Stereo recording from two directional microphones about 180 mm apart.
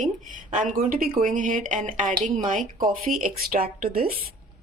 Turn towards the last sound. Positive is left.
turn(degrees=-55)  # may be behind; listen again after turning